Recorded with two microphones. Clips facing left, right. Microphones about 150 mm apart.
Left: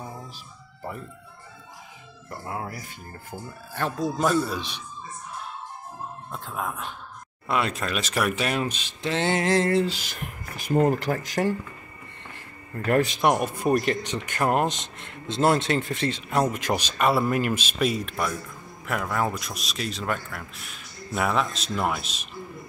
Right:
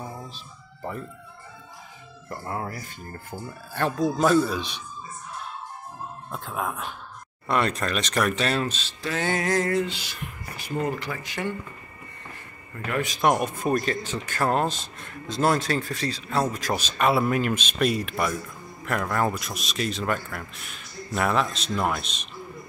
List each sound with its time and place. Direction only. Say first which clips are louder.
2.2 s speech: right 2 dB; 5° left (ahead or behind)
6.3 s speech: right 2 dB; 5° right (ahead or behind); by 9.9 s 30° left (ahead or behind)
9.9 s speech: left 1 dB; 50° left (ahead or behind)
12.3 s music: left 4 dB; 40° left (ahead or behind)
13.2 s speech: even; 5° left (ahead or behind)
13.7 s speech: left 3 dB; 20° left (ahead or behind)
17.0 s speech: right 1 dB; centre (ahead or behind)